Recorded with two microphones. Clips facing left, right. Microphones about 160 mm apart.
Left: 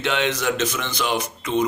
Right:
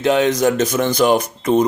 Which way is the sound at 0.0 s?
40° right (ahead or behind).